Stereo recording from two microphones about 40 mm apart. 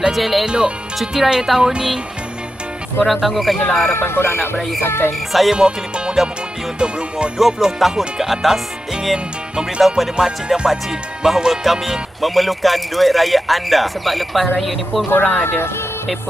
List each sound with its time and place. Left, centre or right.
0.1 s music: centre
0.5 s speech: right
0.9 s music: centre
3.1 s music: centre
3.9 s speech: left
4.4 s music: centre
4.8 s music: left
5.5 s speech: right
7.3 s music: centre
15.0 s speech: left